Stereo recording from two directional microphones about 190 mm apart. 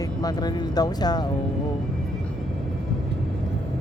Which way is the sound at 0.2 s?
20° left (ahead or behind).